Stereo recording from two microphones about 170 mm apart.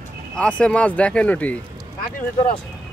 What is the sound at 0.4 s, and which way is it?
Speech, 5° left (ahead or behind).